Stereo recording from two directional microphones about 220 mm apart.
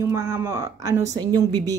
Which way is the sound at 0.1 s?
10° right (ahead or behind).